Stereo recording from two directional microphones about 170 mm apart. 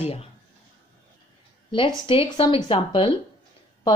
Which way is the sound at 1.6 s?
30° left (ahead or behind).